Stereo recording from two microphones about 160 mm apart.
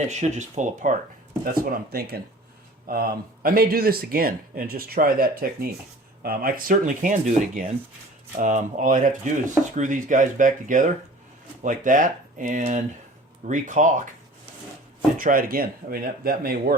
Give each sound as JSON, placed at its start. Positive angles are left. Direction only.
{"t": 0.1, "sound": "speech", "side_deg": -50}
{"t": 1.5, "sound": "speech", "side_deg": -70}
{"t": 15.2, "sound": "speech", "side_deg": -65}